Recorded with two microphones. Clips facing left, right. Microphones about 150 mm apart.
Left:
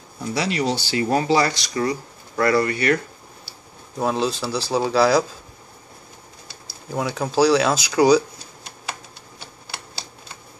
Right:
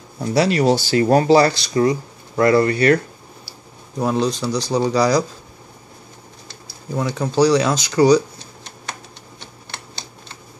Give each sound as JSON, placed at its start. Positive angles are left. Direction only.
{"t": 0.3, "sound": "speech", "side_deg": -45}
{"t": 4.0, "sound": "speech", "side_deg": 0}
{"t": 7.0, "sound": "speech", "side_deg": 5}
{"t": 9.4, "sound": "typewriter", "side_deg": 5}